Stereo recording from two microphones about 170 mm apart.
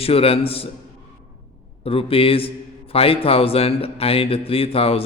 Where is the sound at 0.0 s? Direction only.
35° left (ahead or behind).